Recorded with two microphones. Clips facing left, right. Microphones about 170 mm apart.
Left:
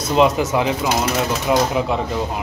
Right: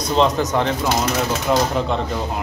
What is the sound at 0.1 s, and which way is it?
Speech, 10° left (ahead or behind).